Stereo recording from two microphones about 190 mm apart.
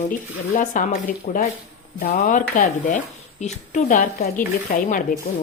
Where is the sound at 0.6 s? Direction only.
45° left (ahead or behind).